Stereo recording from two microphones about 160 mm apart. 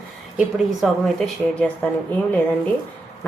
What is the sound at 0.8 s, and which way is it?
Speech, centre (ahead or behind).